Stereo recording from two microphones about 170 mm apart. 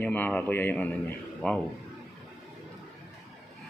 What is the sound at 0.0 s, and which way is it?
A man's voice, 10° left (ahead or behind).